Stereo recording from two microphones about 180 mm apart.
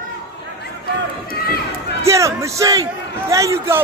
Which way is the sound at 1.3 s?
60° left (ahead or behind).